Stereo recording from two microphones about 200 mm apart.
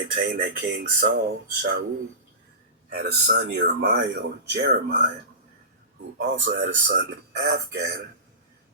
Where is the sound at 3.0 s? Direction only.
60° right (ahead or behind).